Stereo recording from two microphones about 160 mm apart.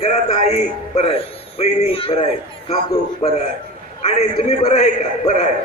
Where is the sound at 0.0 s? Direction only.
40° left (ahead or behind).